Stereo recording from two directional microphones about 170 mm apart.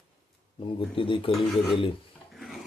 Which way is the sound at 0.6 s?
30° left (ahead or behind).